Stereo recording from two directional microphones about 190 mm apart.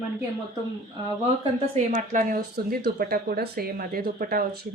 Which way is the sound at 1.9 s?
40° right (ahead or behind).